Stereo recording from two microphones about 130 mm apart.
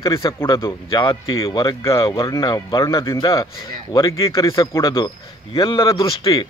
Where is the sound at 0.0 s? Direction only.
30° left (ahead or behind).